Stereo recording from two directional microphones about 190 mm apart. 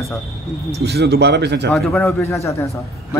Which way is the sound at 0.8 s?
60° right (ahead or behind).